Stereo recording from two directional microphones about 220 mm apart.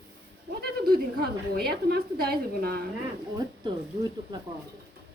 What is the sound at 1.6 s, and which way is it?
A woman's voice, 45° right (ahead or behind).